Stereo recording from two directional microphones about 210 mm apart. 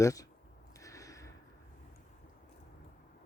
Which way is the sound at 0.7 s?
15° left (ahead or behind).